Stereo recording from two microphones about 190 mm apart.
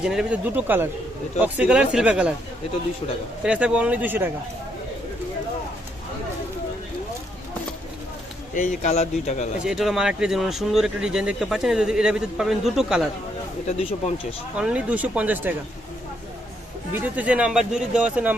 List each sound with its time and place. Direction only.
0.0 s speech: 5° right (ahead or behind)
3.4 s speech: 5° right (ahead or behind)
8.5 s speech: 40° left (ahead or behind)
9.6 s speech: centre (ahead or behind)
14.5 s speech: 5° right (ahead or behind)
16.9 s speech: 10° right (ahead or behind)